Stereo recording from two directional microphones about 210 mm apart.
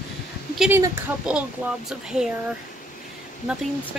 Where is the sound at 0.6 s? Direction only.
10° right (ahead or behind).